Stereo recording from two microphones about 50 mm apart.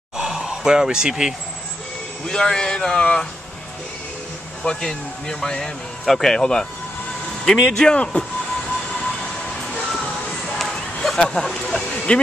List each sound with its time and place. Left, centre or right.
0.2 s speech: centre
2.2 s speech: centre
4.6 s speech: centre
7.7 s speech: centre
10.6 s a sound: centre